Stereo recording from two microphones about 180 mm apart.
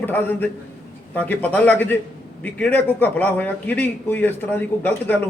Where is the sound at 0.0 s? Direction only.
10° left (ahead or behind).